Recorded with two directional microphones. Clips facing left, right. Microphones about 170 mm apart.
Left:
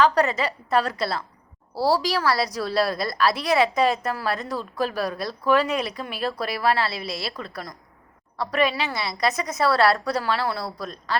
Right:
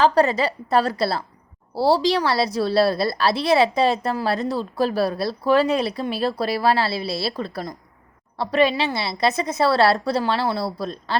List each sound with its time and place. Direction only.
0.0 s a woman's voice: 30° right (ahead or behind)